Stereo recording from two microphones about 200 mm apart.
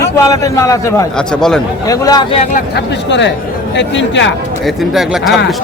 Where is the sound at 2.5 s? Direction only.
55° left (ahead or behind).